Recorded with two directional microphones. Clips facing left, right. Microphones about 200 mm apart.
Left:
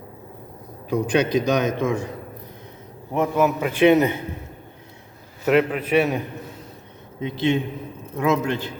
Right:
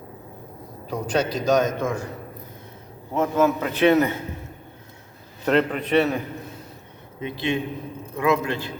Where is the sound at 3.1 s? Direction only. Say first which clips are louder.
Even; 15° left (ahead or behind).